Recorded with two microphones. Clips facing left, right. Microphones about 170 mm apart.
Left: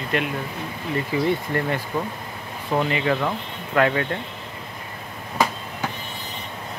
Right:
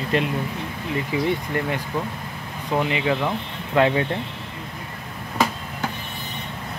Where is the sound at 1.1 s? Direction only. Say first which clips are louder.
Left 1 dB; 15° right (ahead or behind).